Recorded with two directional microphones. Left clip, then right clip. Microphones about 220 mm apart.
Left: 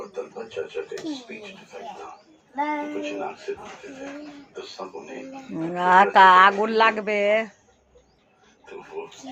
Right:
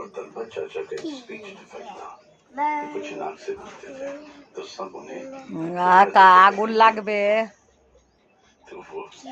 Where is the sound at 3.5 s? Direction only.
40° right (ahead or behind).